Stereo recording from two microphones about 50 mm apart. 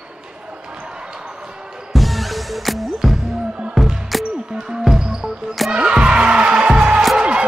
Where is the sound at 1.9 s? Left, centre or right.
Centre.